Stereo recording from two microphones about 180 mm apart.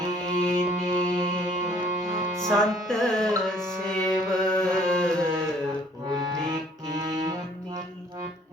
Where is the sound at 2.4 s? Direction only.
Centre (ahead or behind).